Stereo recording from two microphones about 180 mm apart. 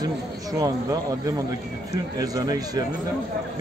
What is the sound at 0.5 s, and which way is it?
Speech, 20° right (ahead or behind).